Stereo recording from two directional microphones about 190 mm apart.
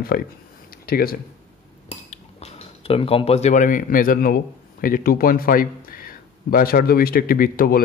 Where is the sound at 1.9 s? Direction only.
35° left (ahead or behind).